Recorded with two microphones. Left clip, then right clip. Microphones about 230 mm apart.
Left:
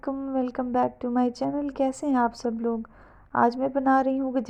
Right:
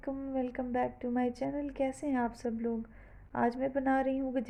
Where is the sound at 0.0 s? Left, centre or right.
Left.